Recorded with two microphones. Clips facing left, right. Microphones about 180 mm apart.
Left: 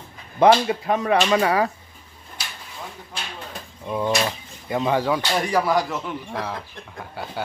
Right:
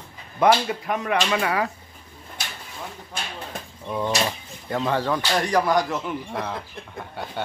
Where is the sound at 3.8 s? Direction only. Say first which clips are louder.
Left 2 dB; 10° left (ahead or behind).